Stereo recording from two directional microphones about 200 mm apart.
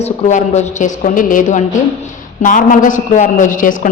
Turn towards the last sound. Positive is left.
turn(degrees=40)  # may be behind; listen again after turning